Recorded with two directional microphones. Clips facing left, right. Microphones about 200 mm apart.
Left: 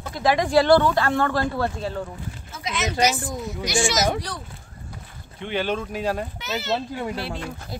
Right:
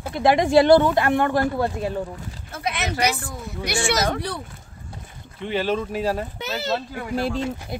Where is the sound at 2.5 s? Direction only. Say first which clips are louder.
Right 2 dB; 60° right (ahead or behind).